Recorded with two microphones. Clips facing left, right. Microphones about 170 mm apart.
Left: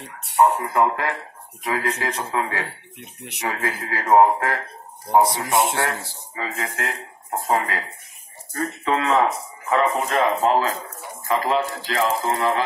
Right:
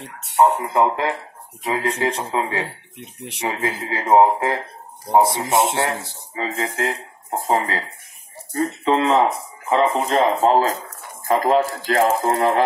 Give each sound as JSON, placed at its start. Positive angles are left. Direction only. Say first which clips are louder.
{"t": 0.4, "sound": "speech", "louder": "right 1 dB", "side_deg": -20}